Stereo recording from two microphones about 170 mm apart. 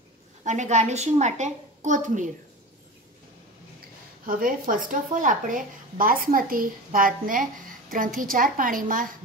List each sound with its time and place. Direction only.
0.4 s a woman's voice: 45° right (ahead or behind)
4.3 s speech: 55° right (ahead or behind)